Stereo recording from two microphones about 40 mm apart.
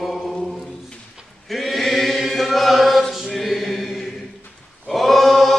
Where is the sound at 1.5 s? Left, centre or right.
Centre.